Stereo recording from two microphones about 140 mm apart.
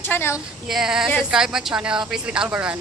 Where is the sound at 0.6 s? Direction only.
5° right (ahead or behind).